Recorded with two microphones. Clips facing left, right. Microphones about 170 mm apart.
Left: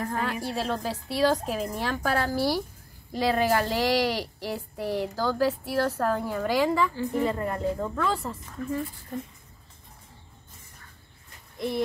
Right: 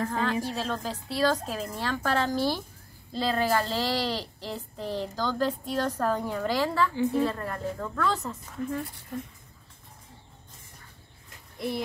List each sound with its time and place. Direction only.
0.0 s speech: 10° left (ahead or behind)